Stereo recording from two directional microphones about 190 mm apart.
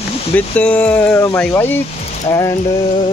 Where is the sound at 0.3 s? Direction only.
5° left (ahead or behind).